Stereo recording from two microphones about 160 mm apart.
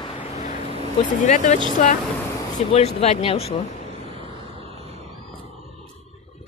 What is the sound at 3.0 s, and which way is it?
Speech, 40° left (ahead or behind).